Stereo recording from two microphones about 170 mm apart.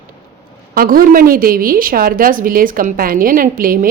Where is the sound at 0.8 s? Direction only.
55° right (ahead or behind).